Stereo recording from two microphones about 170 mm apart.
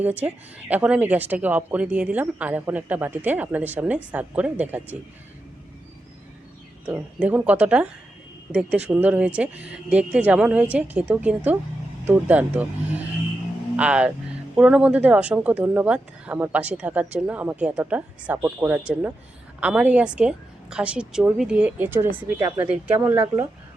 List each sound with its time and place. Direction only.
0.2 s a woman's voice: 10° right (ahead or behind)
6.8 s a woman's voice: 10° right (ahead or behind)
13.7 s a woman's voice: 5° right (ahead or behind)